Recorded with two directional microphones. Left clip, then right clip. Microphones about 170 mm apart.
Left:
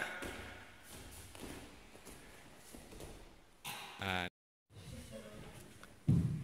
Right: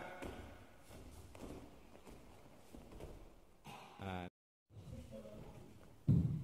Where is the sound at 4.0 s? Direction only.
20° left (ahead or behind).